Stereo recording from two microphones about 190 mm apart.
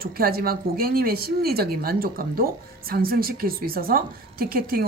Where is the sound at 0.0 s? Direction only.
50° right (ahead or behind).